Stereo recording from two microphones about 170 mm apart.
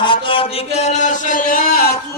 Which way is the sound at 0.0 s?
30° left (ahead or behind).